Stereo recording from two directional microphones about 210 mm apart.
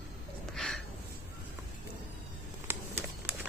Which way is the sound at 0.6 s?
Centre (ahead or behind).